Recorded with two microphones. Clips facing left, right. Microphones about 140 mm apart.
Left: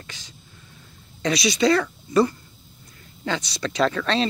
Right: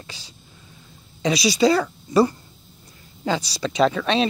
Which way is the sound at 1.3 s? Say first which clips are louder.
Right 2 dB; 30° right (ahead or behind).